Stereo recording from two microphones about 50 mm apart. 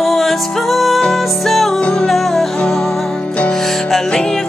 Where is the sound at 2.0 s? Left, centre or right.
Centre.